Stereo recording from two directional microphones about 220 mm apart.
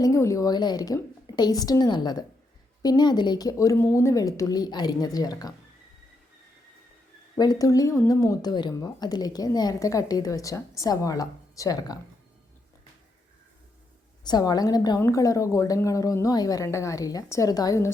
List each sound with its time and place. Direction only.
0.0 s speech: 15° left (ahead or behind)
7.3 s speech: 15° left (ahead or behind)
14.3 s speech: 20° left (ahead or behind)